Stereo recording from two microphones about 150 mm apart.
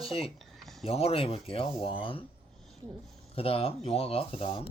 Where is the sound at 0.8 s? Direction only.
40° left (ahead or behind).